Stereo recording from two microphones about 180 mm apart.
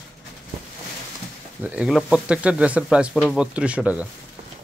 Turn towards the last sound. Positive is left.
turn(degrees=-5)  # may be behind; listen again after turning